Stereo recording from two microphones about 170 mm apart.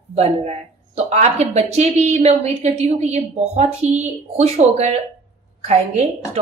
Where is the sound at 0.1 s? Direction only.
40° right (ahead or behind).